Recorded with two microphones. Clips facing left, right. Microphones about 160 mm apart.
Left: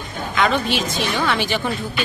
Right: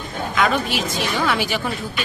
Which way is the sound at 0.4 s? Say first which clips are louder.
Left 1 dB; 5° right (ahead or behind).